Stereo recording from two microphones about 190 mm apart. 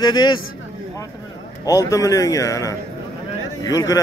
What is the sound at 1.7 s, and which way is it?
Speech, 15° left (ahead or behind).